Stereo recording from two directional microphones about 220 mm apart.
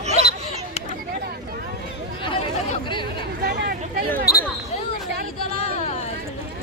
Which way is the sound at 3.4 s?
45° right (ahead or behind).